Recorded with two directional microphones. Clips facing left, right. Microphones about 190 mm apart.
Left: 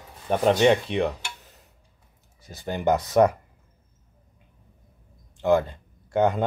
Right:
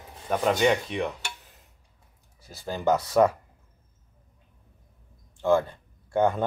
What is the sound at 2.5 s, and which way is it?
Speech, 20° left (ahead or behind).